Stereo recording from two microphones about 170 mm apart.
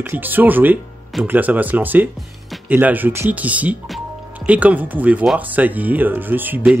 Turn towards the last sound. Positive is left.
turn(degrees=-10)  # may be behind; listen again after turning